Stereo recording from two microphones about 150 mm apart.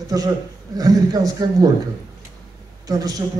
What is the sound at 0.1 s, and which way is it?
A man's voice, 25° right (ahead or behind).